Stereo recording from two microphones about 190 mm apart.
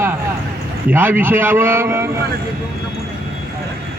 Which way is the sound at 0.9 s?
10° right (ahead or behind).